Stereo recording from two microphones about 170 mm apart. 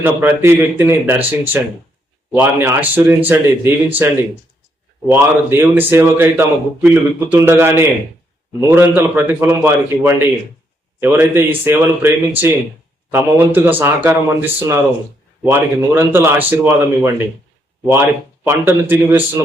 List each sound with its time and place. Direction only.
0.0 s speech: 10° right (ahead or behind)